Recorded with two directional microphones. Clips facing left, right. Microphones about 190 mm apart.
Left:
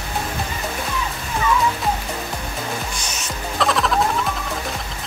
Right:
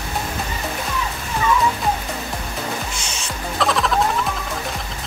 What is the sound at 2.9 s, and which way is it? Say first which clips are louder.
Music: even; 25° right (ahead or behind).